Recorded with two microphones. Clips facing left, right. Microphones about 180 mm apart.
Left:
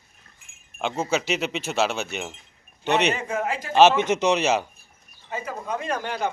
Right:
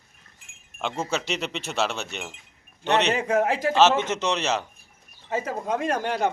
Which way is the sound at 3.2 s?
70° right (ahead or behind).